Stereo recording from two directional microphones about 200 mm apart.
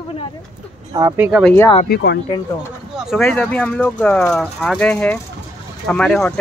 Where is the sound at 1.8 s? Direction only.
55° left (ahead or behind).